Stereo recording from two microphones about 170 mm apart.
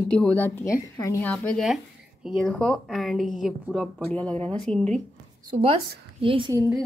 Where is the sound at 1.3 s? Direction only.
Centre (ahead or behind).